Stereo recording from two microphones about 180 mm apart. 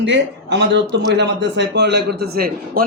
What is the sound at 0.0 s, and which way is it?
A man's voice, 85° right.